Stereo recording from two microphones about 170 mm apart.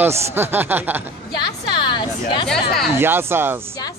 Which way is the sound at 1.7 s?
30° left (ahead or behind).